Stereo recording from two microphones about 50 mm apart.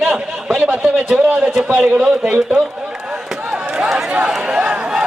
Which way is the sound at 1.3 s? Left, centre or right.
Right.